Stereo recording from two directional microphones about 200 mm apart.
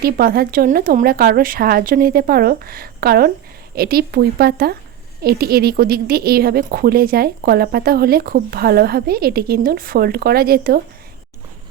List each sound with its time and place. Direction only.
0.0 s a woman's voice: 50° right (ahead or behind)